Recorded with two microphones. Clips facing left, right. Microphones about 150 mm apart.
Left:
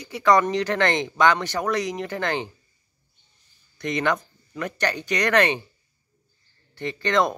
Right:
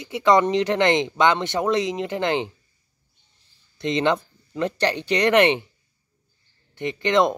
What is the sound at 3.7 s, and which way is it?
Speech, 25° right (ahead or behind).